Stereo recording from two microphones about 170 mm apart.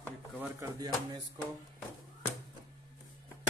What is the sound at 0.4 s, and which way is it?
Speech, 15° right (ahead or behind).